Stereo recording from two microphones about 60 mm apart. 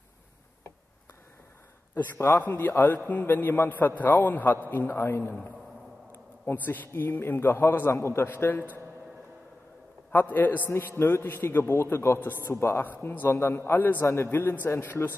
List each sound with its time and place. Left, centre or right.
2.1 s a man's voice: left
6.1 s a sound: left
6.9 s a man's voice: left
8.3 s a man's voice: left
10.1 s a man's voice: left
11.0 s a man's voice: left
13.0 s a man's voice: left
13.3 s a man's voice: left
13.7 s a man's voice: left